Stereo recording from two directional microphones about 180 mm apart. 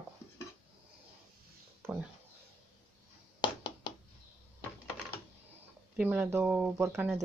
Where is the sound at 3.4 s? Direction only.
25° left (ahead or behind).